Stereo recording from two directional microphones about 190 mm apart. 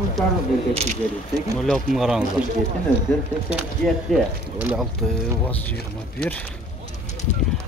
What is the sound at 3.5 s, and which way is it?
Speech, 5° right (ahead or behind).